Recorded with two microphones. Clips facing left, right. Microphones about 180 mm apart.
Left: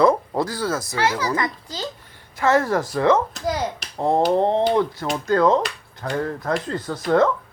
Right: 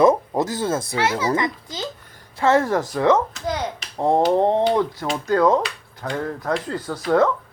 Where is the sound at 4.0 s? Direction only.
15° right (ahead or behind).